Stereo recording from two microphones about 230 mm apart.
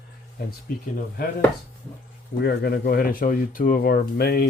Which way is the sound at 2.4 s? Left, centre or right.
Left.